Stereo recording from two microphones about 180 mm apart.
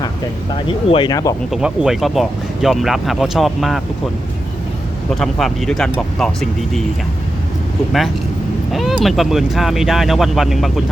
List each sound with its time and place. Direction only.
0.7 s speech: 30° left (ahead or behind)
1.1 s speech: 20° left (ahead or behind)
1.5 s speech: 5° right (ahead or behind)
5.2 s speech: centre (ahead or behind)
8.7 s speech: centre (ahead or behind)